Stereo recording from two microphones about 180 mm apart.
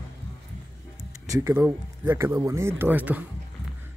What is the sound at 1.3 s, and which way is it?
Speech, 15° right (ahead or behind).